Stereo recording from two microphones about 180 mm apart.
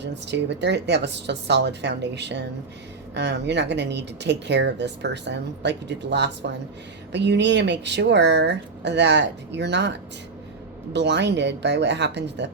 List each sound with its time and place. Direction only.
0.0 s speech: 75° right (ahead or behind)